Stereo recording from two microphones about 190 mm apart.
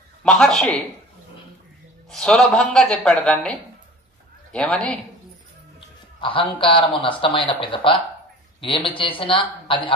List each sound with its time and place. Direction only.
0.2 s a man's voice: 5° left (ahead or behind)
2.0 s a man's voice: 5° left (ahead or behind)
6.2 s a man's voice: 30° left (ahead or behind)